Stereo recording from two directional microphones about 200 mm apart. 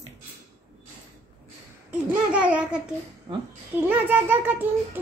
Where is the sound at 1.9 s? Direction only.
5° right (ahead or behind).